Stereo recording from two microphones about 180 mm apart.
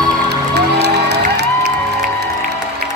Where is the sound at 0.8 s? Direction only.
65° right (ahead or behind).